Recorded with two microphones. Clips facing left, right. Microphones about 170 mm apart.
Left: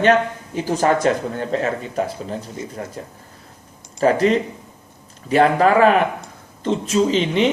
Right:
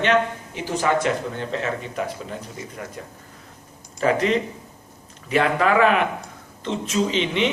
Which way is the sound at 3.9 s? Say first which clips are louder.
Left 4 dB; 40° left (ahead or behind).